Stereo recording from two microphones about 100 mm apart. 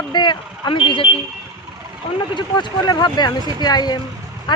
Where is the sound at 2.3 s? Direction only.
50° left (ahead or behind).